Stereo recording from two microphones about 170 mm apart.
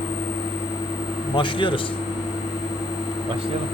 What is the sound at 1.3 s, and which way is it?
Speech, 30° left (ahead or behind).